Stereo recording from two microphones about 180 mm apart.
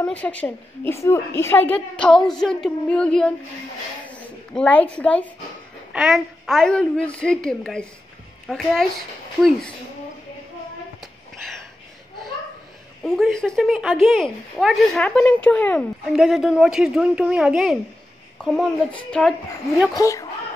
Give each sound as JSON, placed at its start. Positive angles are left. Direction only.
{"t": 0.0, "sound": "a woman's voice", "side_deg": 5}
{"t": 13.0, "sound": "speech", "side_deg": 0}
{"t": 19.9, "sound": "a woman's voice", "side_deg": 20}